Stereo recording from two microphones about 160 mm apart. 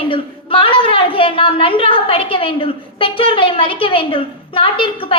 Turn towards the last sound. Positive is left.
turn(degrees=35)  # may be behind; listen again after turning